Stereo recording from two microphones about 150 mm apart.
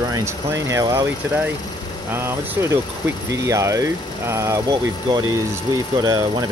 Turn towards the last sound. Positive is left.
turn(degrees=-20)  # may be behind; listen again after turning